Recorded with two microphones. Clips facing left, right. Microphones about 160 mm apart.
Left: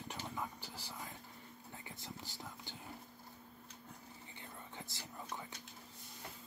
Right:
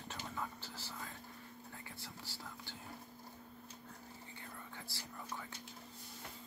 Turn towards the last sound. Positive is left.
turn(degrees=20)  # may be behind; listen again after turning